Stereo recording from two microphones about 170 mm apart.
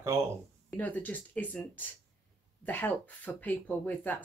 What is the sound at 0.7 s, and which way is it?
Speech, 10° left (ahead or behind).